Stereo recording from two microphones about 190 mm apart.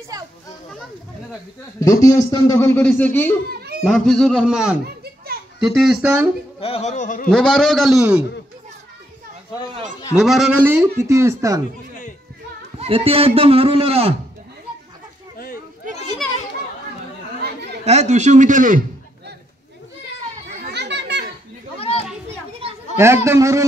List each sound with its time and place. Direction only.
0.1 s children playing: 20° right (ahead or behind)
1.8 s a man's voice: 15° left (ahead or behind)
3.4 s a sound: 55° right (ahead or behind)
3.8 s a man's voice: 5° left (ahead or behind)
6.6 s a sound: 35° left (ahead or behind)
7.2 s a man's voice: 5° left (ahead or behind)
10.1 s speech: centre (ahead or behind)
12.7 s speech: 30° right (ahead or behind)
15.3 s a sound: 50° left (ahead or behind)
17.8 s speech: 35° right (ahead or behind)
20.6 s children playing: 60° right (ahead or behind)
21.7 s children playing: 30° left (ahead or behind)
22.9 s speech: 15° right (ahead or behind)